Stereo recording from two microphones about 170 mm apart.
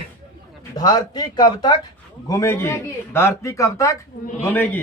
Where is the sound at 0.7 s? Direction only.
25° left (ahead or behind).